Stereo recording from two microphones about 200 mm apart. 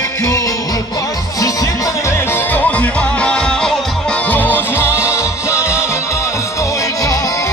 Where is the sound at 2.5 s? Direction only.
5° left (ahead or behind).